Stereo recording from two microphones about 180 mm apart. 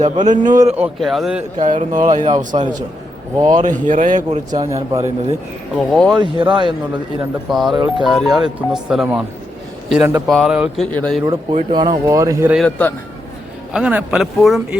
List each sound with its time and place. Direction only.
0.0 s a man's voice: 40° right (ahead or behind)
0.8 s speech: centre (ahead or behind)
1.9 s a man's voice: 45° right (ahead or behind)
4.5 s speech: 20° right (ahead or behind)
5.7 s speech: centre (ahead or behind)
6.1 s speech: 25° right (ahead or behind)
7.2 s speech: centre (ahead or behind)
7.7 s speech: 25° right (ahead or behind)
8.0 s a man's voice: centre (ahead or behind)
11.3 s speech: 25° right (ahead or behind)
12.5 s speech: 5° left (ahead or behind)
13.7 s speech: 5° right (ahead or behind)